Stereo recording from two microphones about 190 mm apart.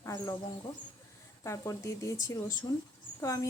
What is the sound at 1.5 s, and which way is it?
A woman's voice, 15° left (ahead or behind).